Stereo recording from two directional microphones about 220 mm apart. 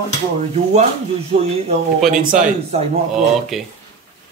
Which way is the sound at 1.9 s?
Centre (ahead or behind).